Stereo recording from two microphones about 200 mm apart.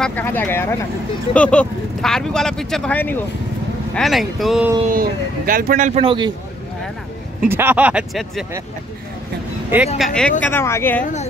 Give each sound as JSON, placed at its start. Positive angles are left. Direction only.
{"t": 0.0, "sound": "speech", "side_deg": 10}
{"t": 4.8, "sound": "a man's voice", "side_deg": -45}
{"t": 7.4, "sound": "speech", "side_deg": -10}
{"t": 9.9, "sound": "speech", "side_deg": 0}